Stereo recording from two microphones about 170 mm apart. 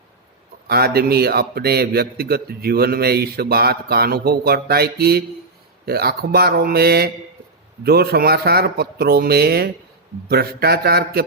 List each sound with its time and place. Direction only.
0.7 s a man's voice: 65° right (ahead or behind)